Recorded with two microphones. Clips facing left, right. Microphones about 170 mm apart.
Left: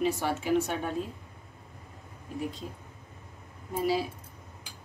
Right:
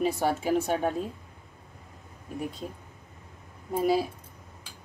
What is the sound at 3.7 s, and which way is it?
Speech, 50° right (ahead or behind).